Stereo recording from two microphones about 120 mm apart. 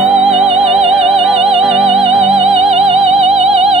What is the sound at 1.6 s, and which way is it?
Music, 5° right (ahead or behind).